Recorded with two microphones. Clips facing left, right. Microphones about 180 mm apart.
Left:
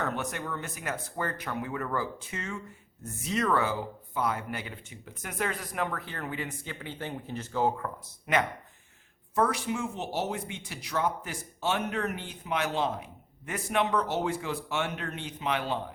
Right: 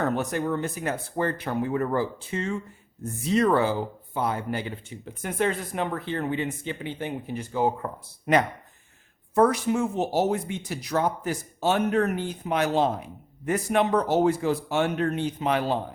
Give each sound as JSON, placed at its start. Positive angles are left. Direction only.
{"t": 0.0, "sound": "speech", "side_deg": -35}
{"t": 8.3, "sound": "speech", "side_deg": -40}